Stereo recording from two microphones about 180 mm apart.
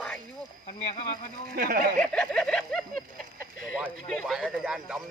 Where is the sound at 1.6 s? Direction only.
50° right (ahead or behind).